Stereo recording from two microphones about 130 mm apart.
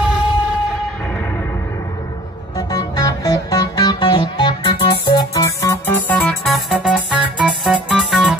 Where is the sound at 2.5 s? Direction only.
30° left (ahead or behind); by 6.3 s 10° left (ahead or behind).